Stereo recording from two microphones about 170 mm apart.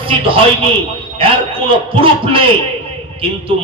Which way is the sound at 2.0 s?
30° right (ahead or behind).